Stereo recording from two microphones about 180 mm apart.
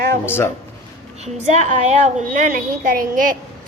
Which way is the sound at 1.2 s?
40° right (ahead or behind).